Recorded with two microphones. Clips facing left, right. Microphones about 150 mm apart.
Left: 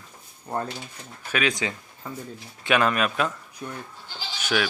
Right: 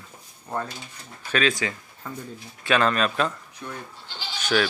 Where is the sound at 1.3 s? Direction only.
20° left (ahead or behind).